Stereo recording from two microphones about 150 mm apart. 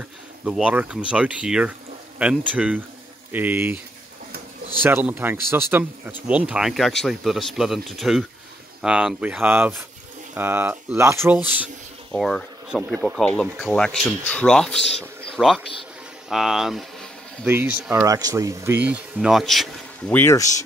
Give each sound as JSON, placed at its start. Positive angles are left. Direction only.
{"t": 0.5, "sound": "speech", "side_deg": -10}
{"t": 4.8, "sound": "speech", "side_deg": -15}
{"t": 12.1, "sound": "speech", "side_deg": 5}
{"t": 17.5, "sound": "speech", "side_deg": -10}
{"t": 18.0, "sound": "speech", "side_deg": -20}
{"t": 20.2, "sound": "speech", "side_deg": 20}